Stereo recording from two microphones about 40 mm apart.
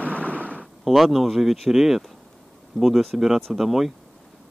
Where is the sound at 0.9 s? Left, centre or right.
Centre.